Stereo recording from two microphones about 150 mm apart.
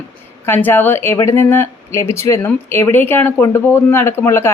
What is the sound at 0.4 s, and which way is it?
Speech, 15° left (ahead or behind).